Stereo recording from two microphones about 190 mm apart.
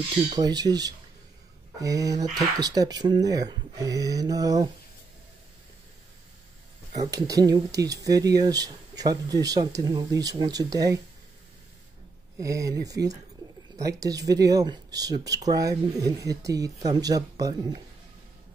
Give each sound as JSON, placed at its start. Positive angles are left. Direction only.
{"t": 0.3, "sound": "speech", "side_deg": -20}
{"t": 7.0, "sound": "speech", "side_deg": -20}
{"t": 12.4, "sound": "speech", "side_deg": -15}